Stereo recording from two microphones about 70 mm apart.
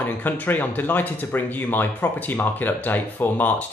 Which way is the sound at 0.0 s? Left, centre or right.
Left.